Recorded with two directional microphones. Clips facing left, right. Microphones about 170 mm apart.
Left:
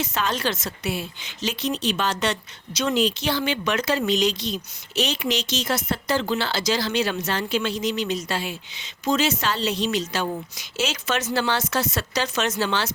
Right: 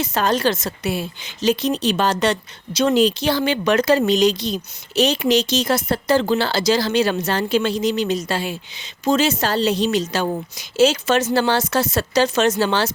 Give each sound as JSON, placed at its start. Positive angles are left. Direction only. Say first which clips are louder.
{"t": 0.0, "sound": "a woman's voice", "louder": "right 6 dB", "side_deg": -35}